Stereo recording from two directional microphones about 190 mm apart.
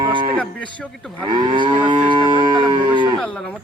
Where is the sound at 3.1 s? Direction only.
5° left (ahead or behind).